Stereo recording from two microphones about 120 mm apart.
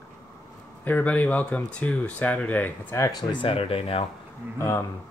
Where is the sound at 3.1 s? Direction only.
35° left (ahead or behind); by 4.0 s 55° left (ahead or behind).